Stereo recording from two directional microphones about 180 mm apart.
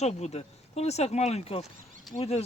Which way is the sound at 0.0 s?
35° left (ahead or behind).